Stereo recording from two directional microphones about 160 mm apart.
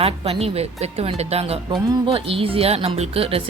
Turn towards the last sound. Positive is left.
turn(degrees=-35)  # may be behind; listen again after turning